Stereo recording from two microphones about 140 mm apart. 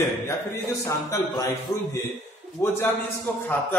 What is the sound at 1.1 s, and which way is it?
Speech, 20° left (ahead or behind).